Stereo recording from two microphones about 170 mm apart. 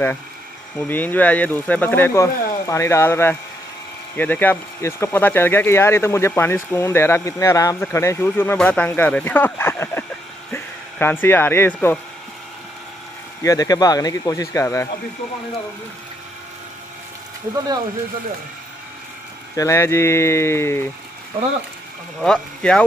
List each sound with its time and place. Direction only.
0.7 s speech: 10° left (ahead or behind)
13.4 s speech: 20° left (ahead or behind)
19.5 s speech: 15° left (ahead or behind)
22.2 s speech: 5° left (ahead or behind)